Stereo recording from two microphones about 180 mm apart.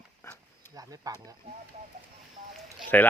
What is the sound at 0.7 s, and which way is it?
Speech, 20° right (ahead or behind).